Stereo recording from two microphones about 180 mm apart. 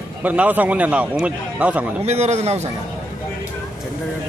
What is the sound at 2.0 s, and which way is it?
Speech, 35° right (ahead or behind).